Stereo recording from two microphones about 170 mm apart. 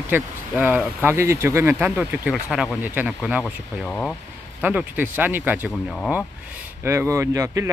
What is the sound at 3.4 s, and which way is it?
Speech, 5° left (ahead or behind).